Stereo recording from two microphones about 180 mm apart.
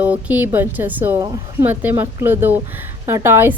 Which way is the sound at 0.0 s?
10° right (ahead or behind).